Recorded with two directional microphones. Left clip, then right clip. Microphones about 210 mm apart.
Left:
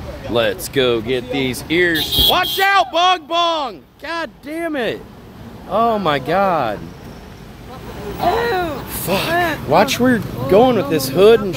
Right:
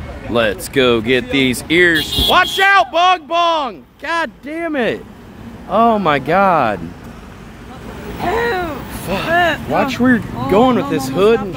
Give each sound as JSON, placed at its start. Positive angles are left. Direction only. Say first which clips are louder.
{"t": 0.3, "sound": "a man's voice", "louder": "right 2 dB", "side_deg": -10}
{"t": 8.3, "sound": "a sound", "louder": "even", "side_deg": 10}
{"t": 9.7, "sound": "speech", "louder": "left 1 dB", "side_deg": 15}